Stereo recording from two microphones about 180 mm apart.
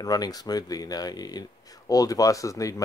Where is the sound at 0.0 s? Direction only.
20° left (ahead or behind).